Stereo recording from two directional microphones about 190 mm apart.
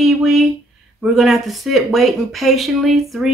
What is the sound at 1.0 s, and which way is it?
Speech, centre (ahead or behind).